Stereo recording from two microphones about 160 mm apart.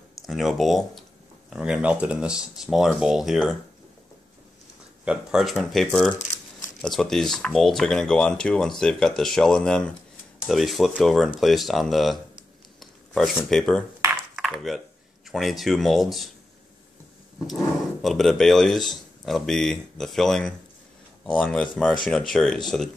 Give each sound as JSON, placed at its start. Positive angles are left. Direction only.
{"t": 0.3, "sound": "speech", "side_deg": 0}
{"t": 5.0, "sound": "speech", "side_deg": -5}
{"t": 14.3, "sound": "a sound", "side_deg": 0}
{"t": 15.3, "sound": "speech", "side_deg": 0}
{"t": 18.0, "sound": "speech", "side_deg": 0}